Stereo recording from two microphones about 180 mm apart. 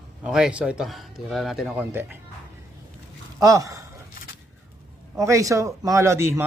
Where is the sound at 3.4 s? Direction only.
20° right (ahead or behind).